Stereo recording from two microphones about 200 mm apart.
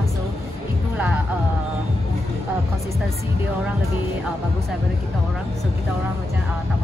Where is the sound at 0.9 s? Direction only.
5° right (ahead or behind).